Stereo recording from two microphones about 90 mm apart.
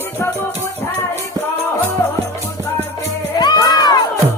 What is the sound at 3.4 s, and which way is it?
Music, 50° left (ahead or behind).